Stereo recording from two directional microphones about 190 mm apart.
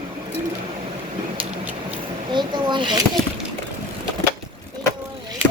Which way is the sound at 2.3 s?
25° right (ahead or behind).